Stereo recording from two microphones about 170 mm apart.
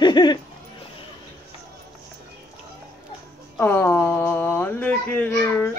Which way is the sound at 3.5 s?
10° left (ahead or behind).